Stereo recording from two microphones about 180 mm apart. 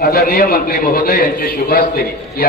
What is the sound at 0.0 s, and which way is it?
A man's voice, 55° left (ahead or behind).